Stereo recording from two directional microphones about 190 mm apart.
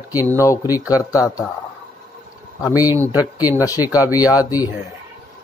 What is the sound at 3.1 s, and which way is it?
Speech, 10° right (ahead or behind).